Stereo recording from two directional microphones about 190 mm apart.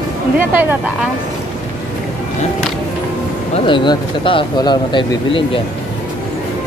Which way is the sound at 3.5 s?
25° left (ahead or behind).